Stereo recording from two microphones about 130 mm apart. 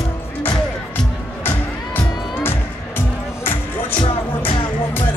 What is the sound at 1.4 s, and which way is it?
Music, 15° left (ahead or behind).